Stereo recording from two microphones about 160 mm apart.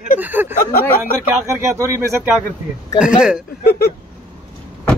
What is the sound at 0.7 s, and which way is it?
Speech, 65° left (ahead or behind).